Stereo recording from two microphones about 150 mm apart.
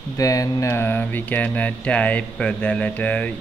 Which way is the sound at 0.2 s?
20° left (ahead or behind).